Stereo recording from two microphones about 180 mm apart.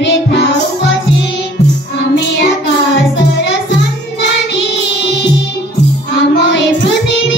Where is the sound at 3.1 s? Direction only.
75° left (ahead or behind).